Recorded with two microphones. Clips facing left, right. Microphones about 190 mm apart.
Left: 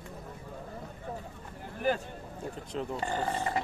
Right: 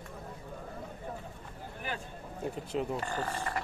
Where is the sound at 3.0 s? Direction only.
25° left (ahead or behind).